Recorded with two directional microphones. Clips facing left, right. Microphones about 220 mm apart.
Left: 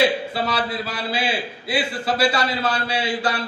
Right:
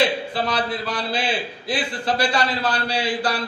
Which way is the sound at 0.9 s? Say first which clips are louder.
Even; 5° left (ahead or behind).